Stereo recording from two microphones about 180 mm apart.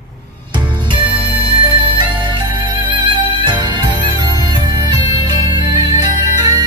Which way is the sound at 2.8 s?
25° right (ahead or behind).